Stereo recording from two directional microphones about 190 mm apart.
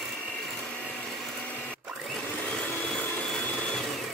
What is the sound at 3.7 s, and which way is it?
Vehicle, centre (ahead or behind).